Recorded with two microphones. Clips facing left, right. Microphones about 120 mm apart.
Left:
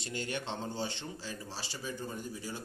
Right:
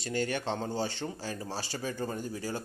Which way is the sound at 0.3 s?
40° right (ahead or behind).